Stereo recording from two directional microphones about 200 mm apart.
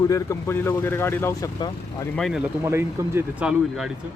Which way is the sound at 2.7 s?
10° right (ahead or behind).